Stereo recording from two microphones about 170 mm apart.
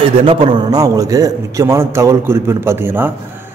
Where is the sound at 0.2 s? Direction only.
30° right (ahead or behind).